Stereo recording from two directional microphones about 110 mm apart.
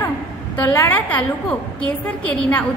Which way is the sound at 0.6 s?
15° left (ahead or behind).